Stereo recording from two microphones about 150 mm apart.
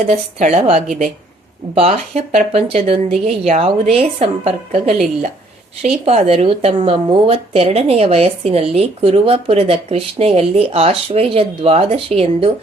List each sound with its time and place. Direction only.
0.1 s a woman's voice: 45° right (ahead or behind)
6.1 s speech: 40° right (ahead or behind)